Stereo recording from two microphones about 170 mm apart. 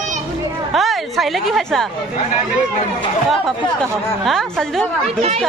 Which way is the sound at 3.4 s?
Centre (ahead or behind).